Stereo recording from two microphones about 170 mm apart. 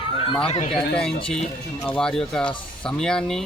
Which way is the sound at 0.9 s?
5° left (ahead or behind).